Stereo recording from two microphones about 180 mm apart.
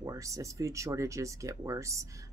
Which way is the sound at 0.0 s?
15° right (ahead or behind).